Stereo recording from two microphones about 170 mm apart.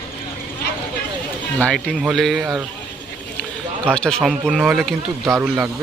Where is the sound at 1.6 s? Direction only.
5° left (ahead or behind).